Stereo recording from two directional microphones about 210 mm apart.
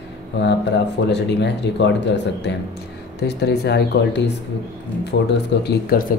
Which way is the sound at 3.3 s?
50° left (ahead or behind).